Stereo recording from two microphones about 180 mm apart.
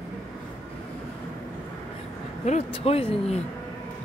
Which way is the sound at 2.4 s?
35° left (ahead or behind).